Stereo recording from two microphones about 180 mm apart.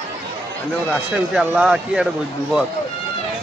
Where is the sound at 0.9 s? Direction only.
5° right (ahead or behind).